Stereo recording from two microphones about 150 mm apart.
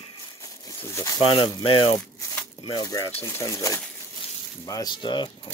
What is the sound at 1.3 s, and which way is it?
Speech, 30° left (ahead or behind).